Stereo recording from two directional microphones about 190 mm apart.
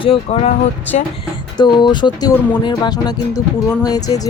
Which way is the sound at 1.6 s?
20° left (ahead or behind).